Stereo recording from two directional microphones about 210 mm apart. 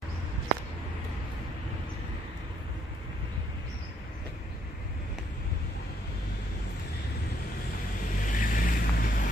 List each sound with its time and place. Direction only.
8.3 s vehicle: 40° left (ahead or behind)